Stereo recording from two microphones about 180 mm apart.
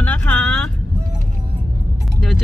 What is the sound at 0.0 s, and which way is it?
Vehicle, 10° left (ahead or behind).